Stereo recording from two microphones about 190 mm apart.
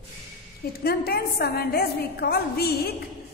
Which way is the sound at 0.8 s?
55° left (ahead or behind).